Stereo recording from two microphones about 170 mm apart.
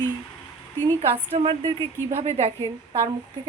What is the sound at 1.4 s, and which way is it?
A woman's voice, 35° right (ahead or behind).